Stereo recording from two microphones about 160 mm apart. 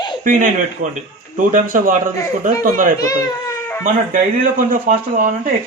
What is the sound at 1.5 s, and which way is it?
A man's voice, 55° right (ahead or behind).